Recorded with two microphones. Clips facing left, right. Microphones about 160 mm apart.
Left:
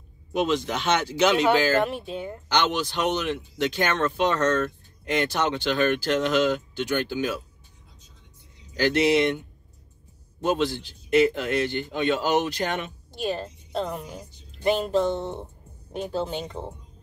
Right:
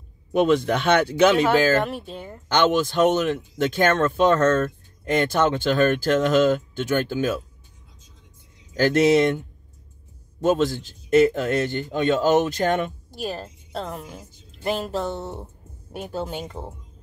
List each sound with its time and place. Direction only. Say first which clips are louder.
0.3 s speech: right 6 dB; 55° right (ahead or behind)
1.8 s a woman's voice: left 1 dB; centre (ahead or behind)
2.4 s speech: right 6 dB; 50° right (ahead or behind)
8.7 s speech: right 4 dB; 45° right (ahead or behind)
10.4 s speech: right 4 dB; 45° right (ahead or behind)
13.1 s a woman's voice: left 2 dB; 5° right (ahead or behind)